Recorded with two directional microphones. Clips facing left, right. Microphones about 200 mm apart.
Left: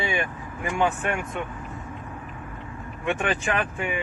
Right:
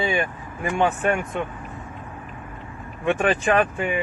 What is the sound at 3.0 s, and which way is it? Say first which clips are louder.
Speech: right 5 dB; 35° right (ahead or behind).